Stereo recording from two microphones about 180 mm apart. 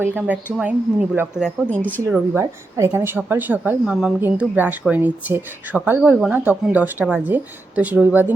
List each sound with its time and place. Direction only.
0.0 s a woman's voice: 10° right (ahead or behind)